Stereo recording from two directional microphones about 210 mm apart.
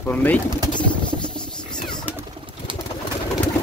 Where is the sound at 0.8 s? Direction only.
5° left (ahead or behind).